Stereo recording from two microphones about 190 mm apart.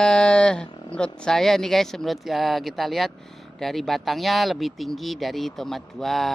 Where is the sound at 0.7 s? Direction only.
30° left (ahead or behind).